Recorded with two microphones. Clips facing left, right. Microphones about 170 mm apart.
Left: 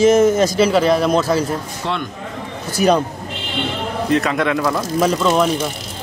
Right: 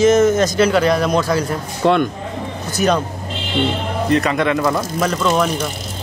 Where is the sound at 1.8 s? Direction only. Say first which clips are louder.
Right 10 dB; 55° right (ahead or behind).